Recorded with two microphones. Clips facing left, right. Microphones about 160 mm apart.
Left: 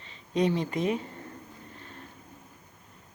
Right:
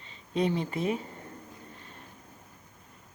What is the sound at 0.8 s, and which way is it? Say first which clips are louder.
Speech: left 2 dB; 35° right (ahead or behind).